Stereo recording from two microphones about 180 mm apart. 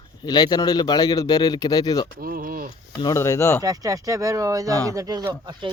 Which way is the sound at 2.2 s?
50° right (ahead or behind).